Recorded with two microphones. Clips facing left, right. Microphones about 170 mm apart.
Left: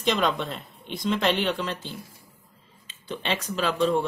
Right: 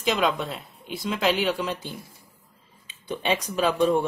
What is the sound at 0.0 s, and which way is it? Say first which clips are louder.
Speech: even; 5° right (ahead or behind).